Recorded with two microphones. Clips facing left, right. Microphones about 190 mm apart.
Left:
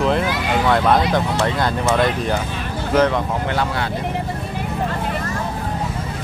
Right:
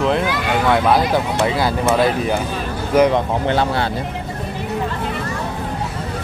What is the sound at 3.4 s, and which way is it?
Speech, 25° right (ahead or behind).